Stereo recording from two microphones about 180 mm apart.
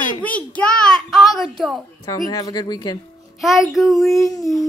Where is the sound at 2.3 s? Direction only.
20° left (ahead or behind).